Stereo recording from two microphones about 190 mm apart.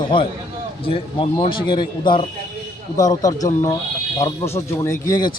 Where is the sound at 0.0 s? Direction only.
25° left (ahead or behind).